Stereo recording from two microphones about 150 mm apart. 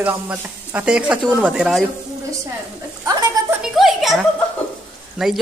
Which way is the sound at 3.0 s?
25° right (ahead or behind).